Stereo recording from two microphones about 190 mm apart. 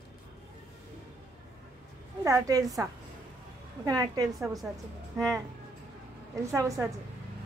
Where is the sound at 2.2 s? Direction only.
15° right (ahead or behind).